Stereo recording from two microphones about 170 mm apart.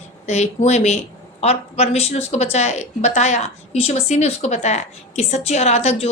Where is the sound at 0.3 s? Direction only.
40° left (ahead or behind).